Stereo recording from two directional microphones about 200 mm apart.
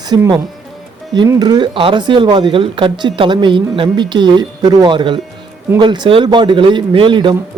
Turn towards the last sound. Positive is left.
turn(degrees=-25)  # may be behind; listen again after turning